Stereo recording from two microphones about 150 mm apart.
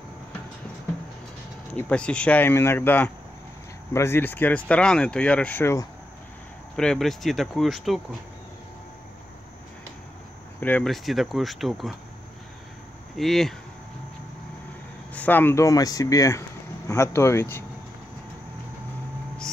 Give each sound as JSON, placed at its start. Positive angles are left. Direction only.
{"t": 1.7, "sound": "speech", "side_deg": 10}
{"t": 6.8, "sound": "speech", "side_deg": 5}
{"t": 10.6, "sound": "speech", "side_deg": 5}
{"t": 13.1, "sound": "speech", "side_deg": 0}
{"t": 15.1, "sound": "speech", "side_deg": 10}